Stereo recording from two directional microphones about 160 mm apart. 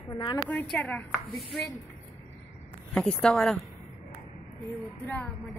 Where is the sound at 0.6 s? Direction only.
5° left (ahead or behind).